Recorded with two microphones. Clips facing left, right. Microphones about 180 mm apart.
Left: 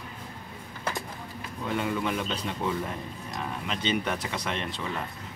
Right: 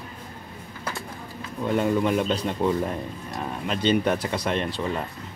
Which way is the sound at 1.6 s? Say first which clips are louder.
Right 7 dB; 40° right (ahead or behind).